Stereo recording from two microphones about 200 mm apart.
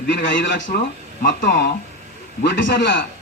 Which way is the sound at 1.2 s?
45° left (ahead or behind).